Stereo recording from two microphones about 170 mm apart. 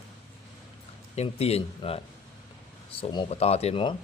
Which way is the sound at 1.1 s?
35° left (ahead or behind).